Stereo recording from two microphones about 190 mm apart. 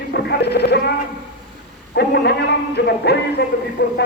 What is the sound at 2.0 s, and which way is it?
A man's voice, 65° left (ahead or behind).